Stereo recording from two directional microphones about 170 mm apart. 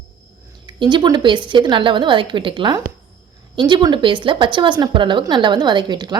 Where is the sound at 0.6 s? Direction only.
25° right (ahead or behind).